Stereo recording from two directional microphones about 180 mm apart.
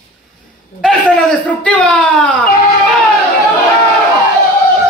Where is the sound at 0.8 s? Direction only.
5° left (ahead or behind).